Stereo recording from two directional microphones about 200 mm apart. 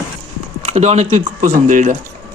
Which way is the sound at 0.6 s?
35° right (ahead or behind).